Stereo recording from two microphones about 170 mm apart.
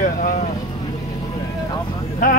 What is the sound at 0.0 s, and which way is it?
Boat, 50° left (ahead or behind).